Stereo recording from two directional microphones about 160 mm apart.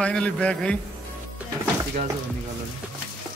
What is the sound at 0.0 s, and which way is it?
Speech, 5° left (ahead or behind).